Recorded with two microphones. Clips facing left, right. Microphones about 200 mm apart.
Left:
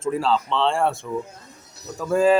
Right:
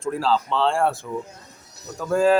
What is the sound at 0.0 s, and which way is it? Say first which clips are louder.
Speech: left 1 dB; centre (ahead or behind).